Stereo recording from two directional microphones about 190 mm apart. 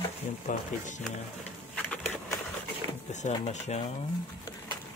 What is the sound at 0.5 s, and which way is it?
Speech, 40° left (ahead or behind).